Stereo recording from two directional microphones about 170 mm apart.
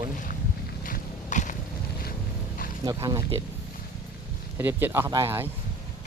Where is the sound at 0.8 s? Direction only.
50° left (ahead or behind).